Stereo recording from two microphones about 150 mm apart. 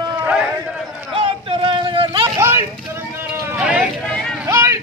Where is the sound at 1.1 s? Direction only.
35° right (ahead or behind).